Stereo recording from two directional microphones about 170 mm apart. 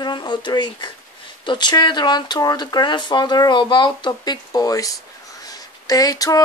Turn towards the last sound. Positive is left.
turn(degrees=20)  # may be behind; listen again after turning